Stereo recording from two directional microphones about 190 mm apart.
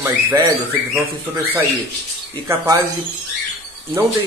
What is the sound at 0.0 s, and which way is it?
Speech, 15° right (ahead or behind).